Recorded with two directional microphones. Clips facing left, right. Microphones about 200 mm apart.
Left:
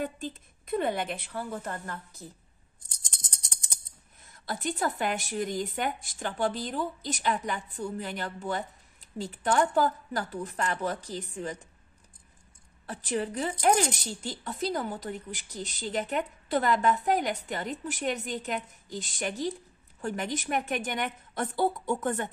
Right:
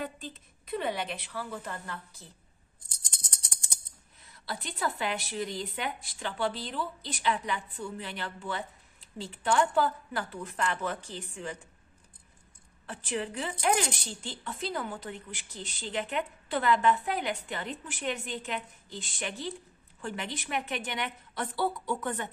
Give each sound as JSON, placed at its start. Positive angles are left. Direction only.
{"t": 0.0, "sound": "speech", "side_deg": 50}
{"t": 4.2, "sound": "speech", "side_deg": 45}
{"t": 12.8, "sound": "speech", "side_deg": 40}